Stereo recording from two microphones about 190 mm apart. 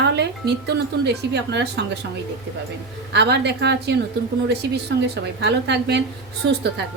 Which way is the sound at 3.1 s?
65° right (ahead or behind).